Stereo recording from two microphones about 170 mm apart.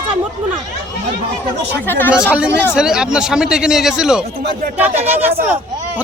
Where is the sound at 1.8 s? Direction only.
10° left (ahead or behind).